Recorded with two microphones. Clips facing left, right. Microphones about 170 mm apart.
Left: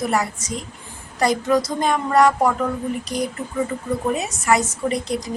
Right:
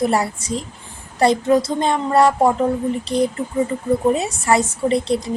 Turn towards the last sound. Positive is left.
turn(degrees=-30)  # may be behind; listen again after turning